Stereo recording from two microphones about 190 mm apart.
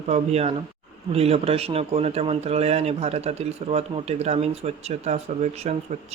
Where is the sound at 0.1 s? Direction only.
35° right (ahead or behind).